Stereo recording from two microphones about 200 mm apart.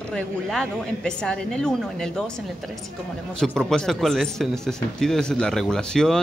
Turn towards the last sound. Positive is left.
turn(degrees=5)  # may be behind; listen again after turning